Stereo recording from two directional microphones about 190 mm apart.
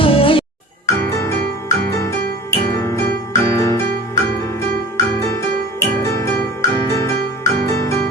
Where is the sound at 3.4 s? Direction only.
15° left (ahead or behind).